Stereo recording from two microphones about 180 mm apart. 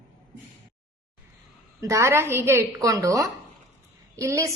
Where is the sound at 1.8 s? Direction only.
15° right (ahead or behind).